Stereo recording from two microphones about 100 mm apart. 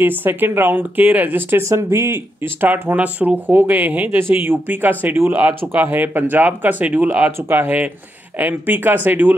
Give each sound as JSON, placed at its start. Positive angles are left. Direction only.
{"t": 0.0, "sound": "speech", "side_deg": -20}